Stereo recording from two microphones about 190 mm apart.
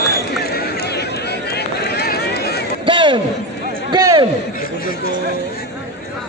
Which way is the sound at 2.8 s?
25° right (ahead or behind).